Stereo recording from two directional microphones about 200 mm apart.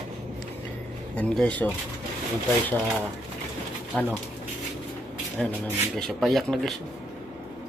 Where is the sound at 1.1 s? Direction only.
5° left (ahead or behind).